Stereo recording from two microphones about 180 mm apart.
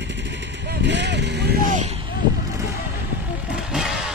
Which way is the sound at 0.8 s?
75° right (ahead or behind).